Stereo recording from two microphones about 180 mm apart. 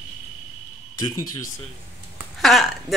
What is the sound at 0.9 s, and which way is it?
Speech, 20° left (ahead or behind).